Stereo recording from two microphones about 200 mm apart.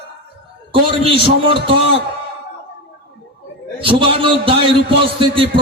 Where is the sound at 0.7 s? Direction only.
25° right (ahead or behind).